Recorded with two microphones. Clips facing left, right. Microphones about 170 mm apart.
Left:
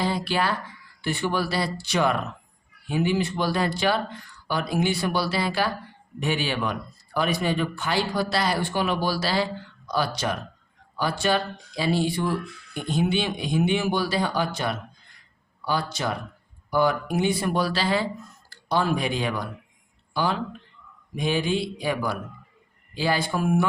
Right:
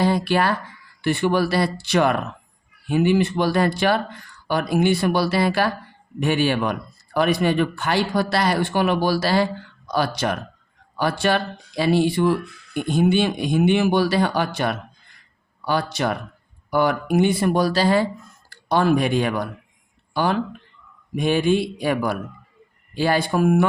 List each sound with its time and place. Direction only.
0.0 s a sound: 55° right (ahead or behind)
1.0 s speech: 60° right (ahead or behind); by 18.0 s 45° right (ahead or behind)
18.7 s speech: 60° right (ahead or behind)
21.2 s speech: 55° right (ahead or behind)